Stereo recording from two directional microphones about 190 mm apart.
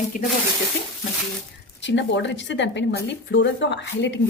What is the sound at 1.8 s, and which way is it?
Speech, 70° left (ahead or behind).